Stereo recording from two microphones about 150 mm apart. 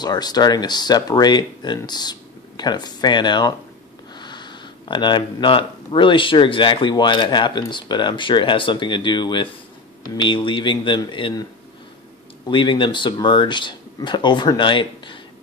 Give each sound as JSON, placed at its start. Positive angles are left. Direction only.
{"t": 0.0, "sound": "speech", "side_deg": 25}
{"t": 12.4, "sound": "speech", "side_deg": 35}